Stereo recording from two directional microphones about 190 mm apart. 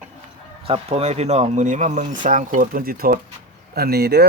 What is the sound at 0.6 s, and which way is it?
Speech, 30° right (ahead or behind).